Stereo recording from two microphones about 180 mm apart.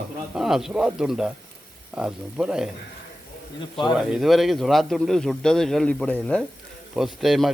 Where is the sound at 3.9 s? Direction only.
Centre (ahead or behind).